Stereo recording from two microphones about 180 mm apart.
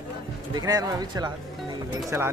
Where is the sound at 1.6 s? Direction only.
15° right (ahead or behind).